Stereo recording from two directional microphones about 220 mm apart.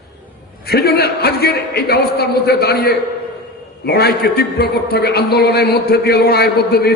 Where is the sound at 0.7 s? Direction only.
45° left (ahead or behind).